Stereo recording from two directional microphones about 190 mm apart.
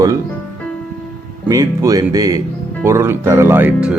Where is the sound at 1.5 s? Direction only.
20° right (ahead or behind).